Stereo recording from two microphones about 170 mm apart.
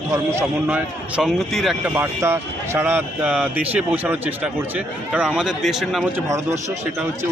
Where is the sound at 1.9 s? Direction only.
15° right (ahead or behind).